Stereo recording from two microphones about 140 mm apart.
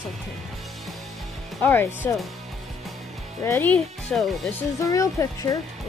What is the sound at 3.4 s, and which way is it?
Speech, 15° left (ahead or behind).